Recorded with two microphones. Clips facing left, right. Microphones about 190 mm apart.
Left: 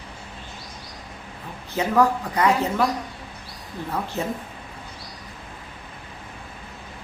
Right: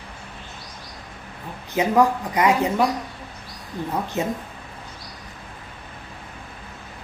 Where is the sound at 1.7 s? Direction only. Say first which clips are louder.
Right 2 dB; 15° right (ahead or behind).